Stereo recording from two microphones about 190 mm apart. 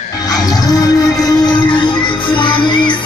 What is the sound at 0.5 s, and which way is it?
Music, 20° left (ahead or behind).